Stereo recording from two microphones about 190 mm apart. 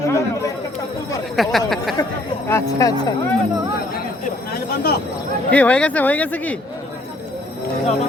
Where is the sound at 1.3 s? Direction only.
Centre (ahead or behind).